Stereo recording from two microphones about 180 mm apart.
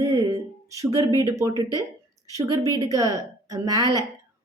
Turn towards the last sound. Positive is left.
turn(degrees=-20)  # may be behind; listen again after turning